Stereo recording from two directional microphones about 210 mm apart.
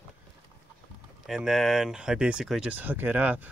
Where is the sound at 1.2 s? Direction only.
Centre (ahead or behind).